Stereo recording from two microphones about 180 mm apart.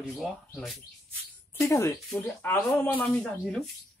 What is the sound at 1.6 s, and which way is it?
Speech, 10° left (ahead or behind).